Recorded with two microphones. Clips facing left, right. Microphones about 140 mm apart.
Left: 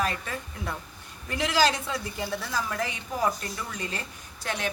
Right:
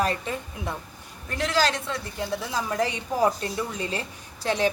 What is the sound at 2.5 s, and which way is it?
A woman's voice, 25° right (ahead or behind).